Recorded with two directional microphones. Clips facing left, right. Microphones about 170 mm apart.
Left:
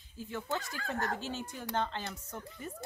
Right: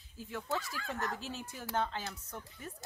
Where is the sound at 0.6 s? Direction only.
40° left (ahead or behind).